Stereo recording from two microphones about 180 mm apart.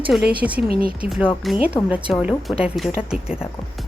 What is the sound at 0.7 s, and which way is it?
Speech, 55° right (ahead or behind).